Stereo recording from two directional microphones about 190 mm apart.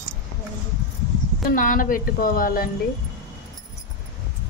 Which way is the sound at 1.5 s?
45° left (ahead or behind).